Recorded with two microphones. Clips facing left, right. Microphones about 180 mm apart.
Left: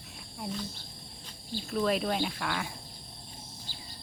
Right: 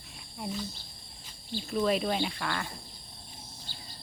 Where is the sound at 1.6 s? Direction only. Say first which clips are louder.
Right 1 dB; centre (ahead or behind).